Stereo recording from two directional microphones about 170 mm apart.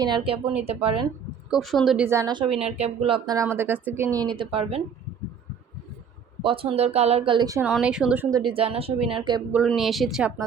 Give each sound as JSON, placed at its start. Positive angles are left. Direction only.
{"t": 0.0, "sound": "speech", "side_deg": -30}
{"t": 1.5, "sound": "speech", "side_deg": 0}
{"t": 2.0, "sound": "speech", "side_deg": -20}
{"t": 3.3, "sound": "a woman's voice", "side_deg": -15}
{"t": 6.4, "sound": "speech", "side_deg": -30}
{"t": 7.6, "sound": "a woman's voice", "side_deg": -5}
{"t": 8.3, "sound": "speech", "side_deg": -25}
{"t": 9.6, "sound": "speech", "side_deg": 0}